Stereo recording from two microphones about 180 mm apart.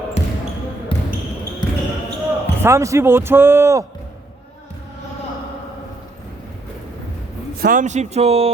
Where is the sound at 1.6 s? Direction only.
25° left (ahead or behind).